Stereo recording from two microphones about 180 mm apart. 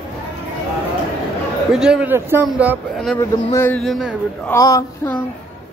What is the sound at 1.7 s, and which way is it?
Speech, 5° right (ahead or behind).